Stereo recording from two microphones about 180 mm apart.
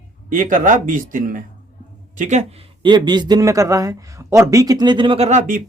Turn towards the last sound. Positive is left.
turn(degrees=-45)  # may be behind; listen again after turning